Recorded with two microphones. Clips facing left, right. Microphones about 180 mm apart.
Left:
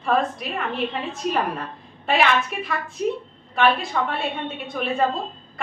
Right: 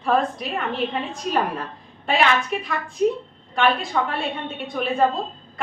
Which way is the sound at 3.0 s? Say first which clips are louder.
Right 4 dB; 45° right (ahead or behind).